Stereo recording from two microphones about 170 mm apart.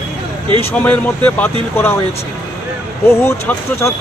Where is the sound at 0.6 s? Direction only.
10° left (ahead or behind).